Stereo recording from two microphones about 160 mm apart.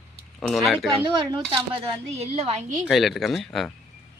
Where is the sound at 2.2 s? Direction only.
40° right (ahead or behind).